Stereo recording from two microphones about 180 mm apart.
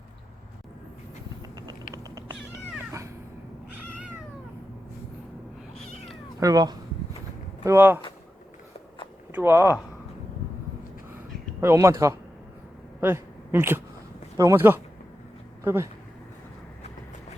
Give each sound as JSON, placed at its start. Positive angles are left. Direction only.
{"t": 1.9, "sound": "cat", "side_deg": -20}
{"t": 6.4, "sound": "speech", "side_deg": -20}
{"t": 9.3, "sound": "speech", "side_deg": -15}
{"t": 11.6, "sound": "speech", "side_deg": -15}
{"t": 13.0, "sound": "a sound", "side_deg": -15}
{"t": 14.3, "sound": "speech", "side_deg": -15}